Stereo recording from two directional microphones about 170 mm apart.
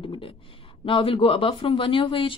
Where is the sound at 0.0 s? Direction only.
30° left (ahead or behind).